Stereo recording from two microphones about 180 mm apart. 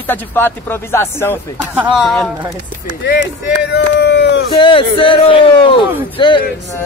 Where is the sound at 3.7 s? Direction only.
70° left (ahead or behind).